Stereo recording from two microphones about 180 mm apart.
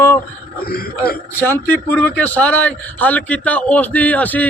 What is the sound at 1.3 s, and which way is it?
Speech, 10° left (ahead or behind).